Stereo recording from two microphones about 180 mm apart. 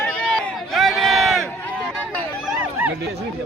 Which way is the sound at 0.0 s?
5° left (ahead or behind).